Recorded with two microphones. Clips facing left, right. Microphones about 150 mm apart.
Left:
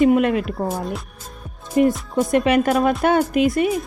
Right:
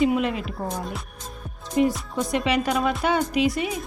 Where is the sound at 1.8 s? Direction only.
55° left (ahead or behind).